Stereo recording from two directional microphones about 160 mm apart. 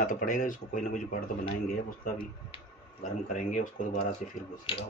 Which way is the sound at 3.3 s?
50° left (ahead or behind).